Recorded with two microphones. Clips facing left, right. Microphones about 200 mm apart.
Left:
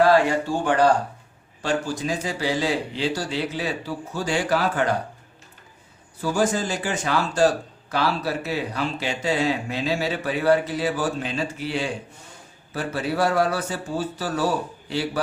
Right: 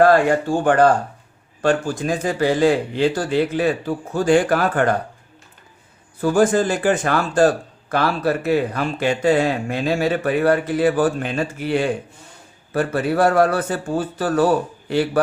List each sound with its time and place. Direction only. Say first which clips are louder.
0.0 s speech: right 4 dB; 50° right (ahead or behind)
6.2 s speech: right 7 dB; 55° right (ahead or behind)